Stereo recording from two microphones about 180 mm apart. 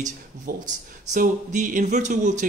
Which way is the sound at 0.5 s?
55° right (ahead or behind).